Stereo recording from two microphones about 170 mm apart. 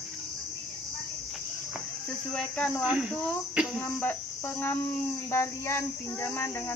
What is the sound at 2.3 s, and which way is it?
Cricket, 5° left (ahead or behind).